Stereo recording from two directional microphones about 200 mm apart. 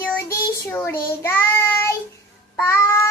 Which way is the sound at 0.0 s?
10° left (ahead or behind).